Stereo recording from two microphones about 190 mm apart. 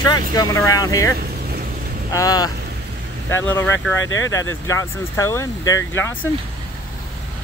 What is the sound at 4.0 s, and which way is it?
Speech, 90° left.